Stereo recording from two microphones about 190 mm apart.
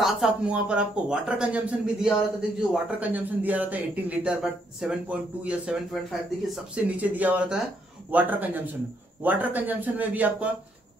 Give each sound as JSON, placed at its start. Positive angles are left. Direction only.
{"t": 0.0, "sound": "speech", "side_deg": 0}